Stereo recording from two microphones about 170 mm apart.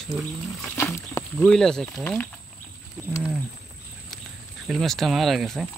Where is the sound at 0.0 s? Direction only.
5° left (ahead or behind).